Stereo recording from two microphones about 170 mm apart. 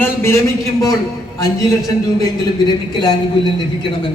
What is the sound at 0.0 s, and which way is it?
Speech, 15° left (ahead or behind).